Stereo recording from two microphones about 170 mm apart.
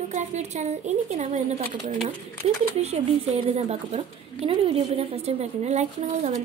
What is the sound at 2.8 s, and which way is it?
A woman's voice, 35° right (ahead or behind).